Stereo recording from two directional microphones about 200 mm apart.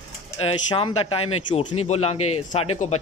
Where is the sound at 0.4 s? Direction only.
25° left (ahead or behind).